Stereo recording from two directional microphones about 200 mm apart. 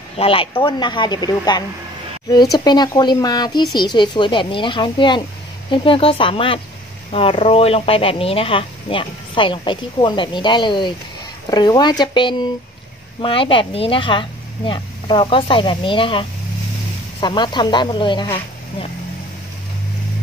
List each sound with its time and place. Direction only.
0.2 s speech: 25° left (ahead or behind)